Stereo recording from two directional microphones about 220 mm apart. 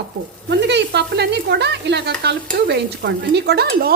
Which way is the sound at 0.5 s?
50° right (ahead or behind).